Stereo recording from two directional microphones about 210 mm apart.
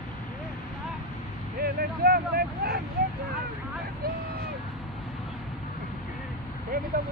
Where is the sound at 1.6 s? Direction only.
45° right (ahead or behind).